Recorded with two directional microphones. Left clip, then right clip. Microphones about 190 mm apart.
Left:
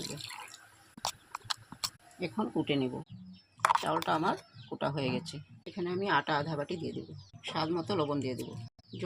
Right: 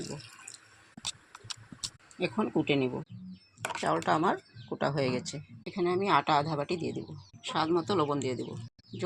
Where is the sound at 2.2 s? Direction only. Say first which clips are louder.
Right 4 dB; 15° right (ahead or behind).